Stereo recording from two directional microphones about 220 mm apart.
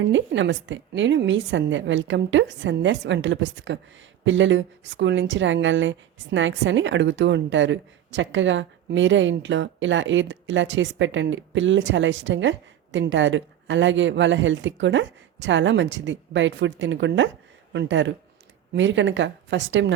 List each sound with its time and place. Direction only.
0.0 s a woman's voice: 55° right (ahead or behind)